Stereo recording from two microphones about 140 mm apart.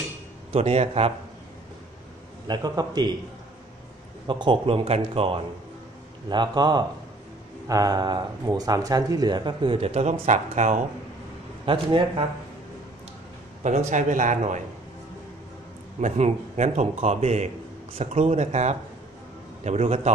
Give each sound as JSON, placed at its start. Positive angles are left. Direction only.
{"t": 0.5, "sound": "a man's voice", "side_deg": -50}
{"t": 2.4, "sound": "a man's voice", "side_deg": -30}
{"t": 4.3, "sound": "speech", "side_deg": -35}
{"t": 10.2, "sound": "a man's voice", "side_deg": -60}
{"t": 11.6, "sound": "speech", "side_deg": -40}
{"t": 13.6, "sound": "a man's voice", "side_deg": -60}
{"t": 16.0, "sound": "a man's voice", "side_deg": -60}